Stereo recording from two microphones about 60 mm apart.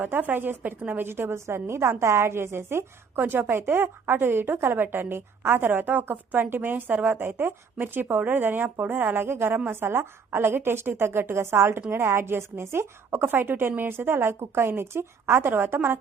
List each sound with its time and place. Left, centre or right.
0.0 s a woman's voice: right